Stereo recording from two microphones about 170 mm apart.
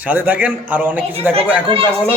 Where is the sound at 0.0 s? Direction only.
10° right (ahead or behind).